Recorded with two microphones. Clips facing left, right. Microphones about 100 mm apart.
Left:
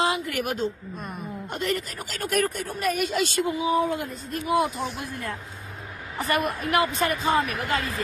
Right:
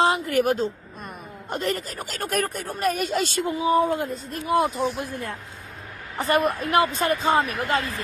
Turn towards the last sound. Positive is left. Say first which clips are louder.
# right 2 dB
turn(degrees=-25)  # may be behind; listen again after turning